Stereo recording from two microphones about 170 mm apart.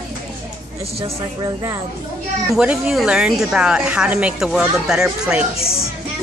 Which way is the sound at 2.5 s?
5° right (ahead or behind).